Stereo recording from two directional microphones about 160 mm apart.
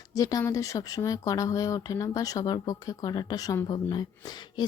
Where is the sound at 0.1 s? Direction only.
20° left (ahead or behind).